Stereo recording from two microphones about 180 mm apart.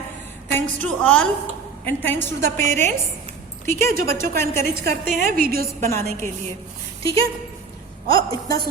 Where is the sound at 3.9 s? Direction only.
55° right (ahead or behind).